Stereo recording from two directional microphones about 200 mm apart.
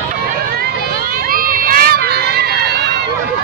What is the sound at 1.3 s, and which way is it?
Crowd, 45° right (ahead or behind).